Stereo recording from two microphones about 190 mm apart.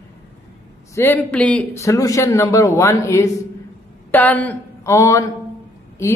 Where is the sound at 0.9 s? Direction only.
10° left (ahead or behind).